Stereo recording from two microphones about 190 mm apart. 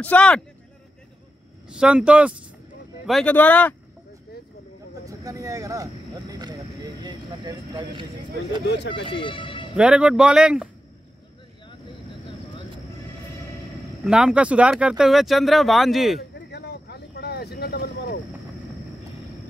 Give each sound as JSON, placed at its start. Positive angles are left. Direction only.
{"t": 0.0, "sound": "speech", "side_deg": 5}
{"t": 1.7, "sound": "speech", "side_deg": -5}
{"t": 3.1, "sound": "speech", "side_deg": 5}
{"t": 5.0, "sound": "speech", "side_deg": -20}
{"t": 6.3, "sound": "a sound", "side_deg": -20}
{"t": 8.6, "sound": "speech", "side_deg": 65}
{"t": 9.0, "sound": "speech", "side_deg": 25}
{"t": 9.8, "sound": "speech", "side_deg": -5}
{"t": 14.0, "sound": "speech", "side_deg": -5}
{"t": 16.3, "sound": "vehicle", "side_deg": 60}